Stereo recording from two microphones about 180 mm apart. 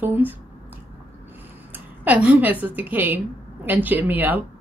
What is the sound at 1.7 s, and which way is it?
A woman's voice, 10° right (ahead or behind).